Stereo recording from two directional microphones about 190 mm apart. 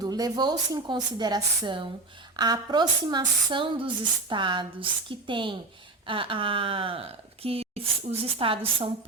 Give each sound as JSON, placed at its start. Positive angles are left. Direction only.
{"t": 0.0, "sound": "speech", "side_deg": -20}